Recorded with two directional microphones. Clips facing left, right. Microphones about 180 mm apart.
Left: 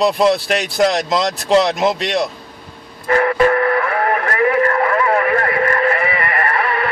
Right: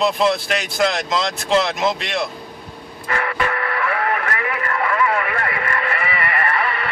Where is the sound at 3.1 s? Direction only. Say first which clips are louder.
Left 9 dB; 35° left (ahead or behind).